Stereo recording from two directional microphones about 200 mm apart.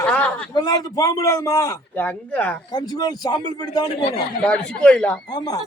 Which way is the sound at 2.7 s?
20° left (ahead or behind).